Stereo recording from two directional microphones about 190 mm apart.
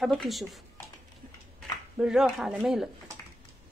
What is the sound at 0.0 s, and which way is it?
Speech, centre (ahead or behind).